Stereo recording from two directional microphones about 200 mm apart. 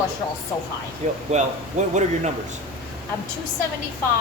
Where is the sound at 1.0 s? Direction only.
35° right (ahead or behind).